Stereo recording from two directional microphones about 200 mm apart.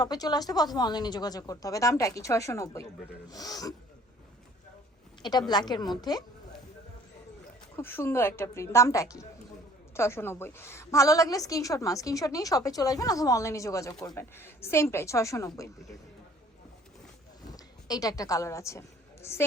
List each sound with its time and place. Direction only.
0.0 s speech: 20° left (ahead or behind)
5.2 s speech: 20° left (ahead or behind)
7.8 s a woman's voice: 10° left (ahead or behind)
17.5 s a woman's voice: 20° left (ahead or behind)